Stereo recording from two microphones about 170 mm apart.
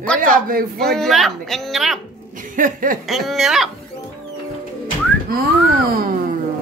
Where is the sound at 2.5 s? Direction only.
55° right (ahead or behind).